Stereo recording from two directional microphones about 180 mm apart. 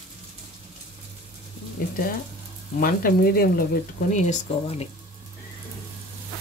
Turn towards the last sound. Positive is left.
turn(degrees=40)  # may be behind; listen again after turning